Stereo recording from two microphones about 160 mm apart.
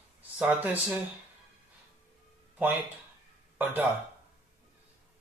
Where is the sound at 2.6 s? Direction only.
10° right (ahead or behind).